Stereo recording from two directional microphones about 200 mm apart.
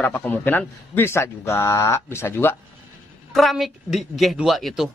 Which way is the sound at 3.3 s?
Centre (ahead or behind).